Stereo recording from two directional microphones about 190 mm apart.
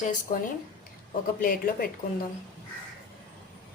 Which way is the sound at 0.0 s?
40° left (ahead or behind).